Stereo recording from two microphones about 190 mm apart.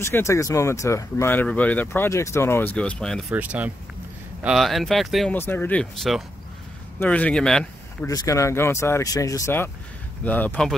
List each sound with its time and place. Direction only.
0.0 s speech: 15° left (ahead or behind)
3.3 s speech: 10° right (ahead or behind)
5.4 s speech: 10° left (ahead or behind)
8.1 s speech: 15° left (ahead or behind)